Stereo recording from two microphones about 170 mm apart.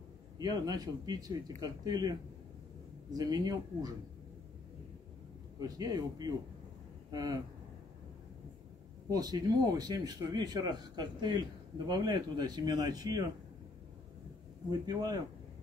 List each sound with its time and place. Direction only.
0.4 s speech: 20° right (ahead or behind)
5.6 s speech: 20° right (ahead or behind)
9.1 s speech: 20° right (ahead or behind)
14.7 s speech: 25° right (ahead or behind)